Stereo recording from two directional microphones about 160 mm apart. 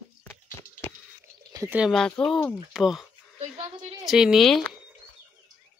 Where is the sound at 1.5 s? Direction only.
20° right (ahead or behind).